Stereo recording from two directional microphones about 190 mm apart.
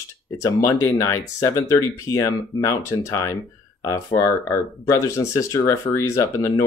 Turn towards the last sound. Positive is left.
turn(degrees=15)  # may be behind; listen again after turning